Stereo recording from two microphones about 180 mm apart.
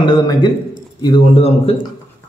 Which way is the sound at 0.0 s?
25° left (ahead or behind).